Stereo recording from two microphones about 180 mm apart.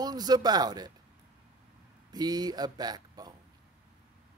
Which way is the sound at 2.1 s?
20° right (ahead or behind).